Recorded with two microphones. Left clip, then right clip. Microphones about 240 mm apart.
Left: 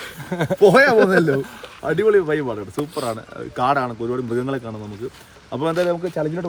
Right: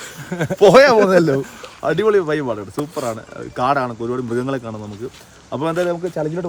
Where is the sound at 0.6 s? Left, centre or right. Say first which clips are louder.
Right 3 dB; centre.